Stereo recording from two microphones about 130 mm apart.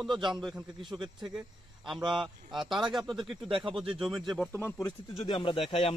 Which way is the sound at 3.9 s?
5° right (ahead or behind).